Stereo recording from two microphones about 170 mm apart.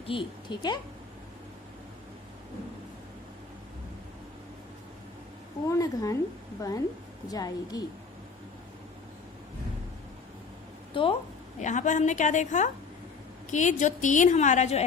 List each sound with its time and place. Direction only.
0.0 s a woman's voice: 30° left (ahead or behind)
5.6 s a woman's voice: 20° left (ahead or behind)
10.9 s a woman's voice: 30° left (ahead or behind)
11.6 s a woman's voice: 45° left (ahead or behind)